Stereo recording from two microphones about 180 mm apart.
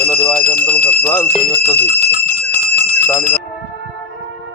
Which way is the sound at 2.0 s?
10° left (ahead or behind).